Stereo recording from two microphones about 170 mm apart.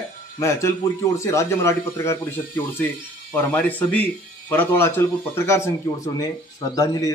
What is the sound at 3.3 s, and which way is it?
Speech, 10° left (ahead or behind).